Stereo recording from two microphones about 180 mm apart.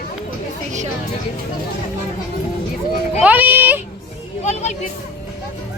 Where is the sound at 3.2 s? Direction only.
10° right (ahead or behind).